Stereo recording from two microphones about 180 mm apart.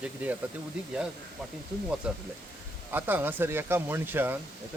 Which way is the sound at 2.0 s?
5° right (ahead or behind).